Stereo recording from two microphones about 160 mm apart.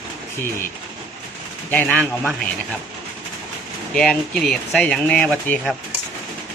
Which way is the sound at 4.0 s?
5° left (ahead or behind).